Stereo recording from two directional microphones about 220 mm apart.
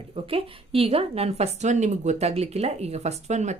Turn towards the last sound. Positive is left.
turn(degrees=-30)  # may be behind; listen again after turning